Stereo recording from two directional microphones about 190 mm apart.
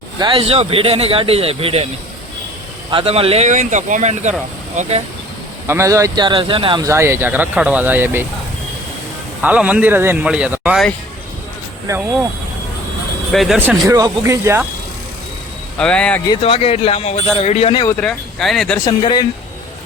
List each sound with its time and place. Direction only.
0.2 s speech: 25° right (ahead or behind)
2.9 s speech: 30° right (ahead or behind)
5.6 s speech: 15° right (ahead or behind)
9.4 s speech: 5° right (ahead or behind)
13.3 s speech: centre (ahead or behind)
13.8 s speech: 20° right (ahead or behind)
15.8 s speech: 5° left (ahead or behind)
16.4 s a man's voice: 30° left (ahead or behind)
17.8 s speech: 5° left (ahead or behind)
18.9 s speech: 20° left (ahead or behind)